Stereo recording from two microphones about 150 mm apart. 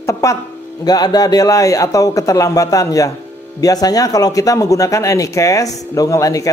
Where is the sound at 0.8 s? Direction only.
25° left (ahead or behind).